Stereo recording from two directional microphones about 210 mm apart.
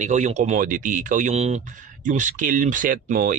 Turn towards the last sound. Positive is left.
turn(degrees=-40)  # may be behind; listen again after turning